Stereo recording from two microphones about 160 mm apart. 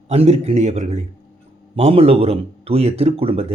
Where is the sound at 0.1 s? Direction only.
40° right (ahead or behind).